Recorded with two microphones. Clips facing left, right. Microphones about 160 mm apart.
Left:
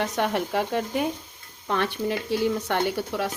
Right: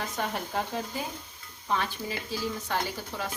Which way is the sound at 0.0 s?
75° left (ahead or behind).